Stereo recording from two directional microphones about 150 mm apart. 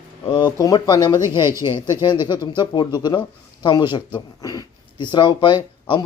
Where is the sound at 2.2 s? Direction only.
30° left (ahead or behind).